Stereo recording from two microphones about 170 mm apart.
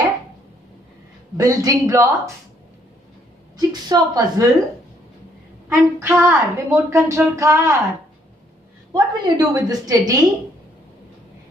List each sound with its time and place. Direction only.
1.3 s a woman's voice: 20° right (ahead or behind)
3.5 s a woman's voice: 25° right (ahead or behind)
5.7 s a woman's voice: 15° right (ahead or behind)
8.9 s a woman's voice: 20° right (ahead or behind)